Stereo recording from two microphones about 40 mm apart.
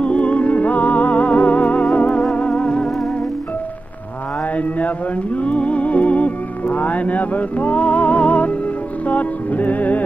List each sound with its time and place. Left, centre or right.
0.0 s music: left
4.6 s music: left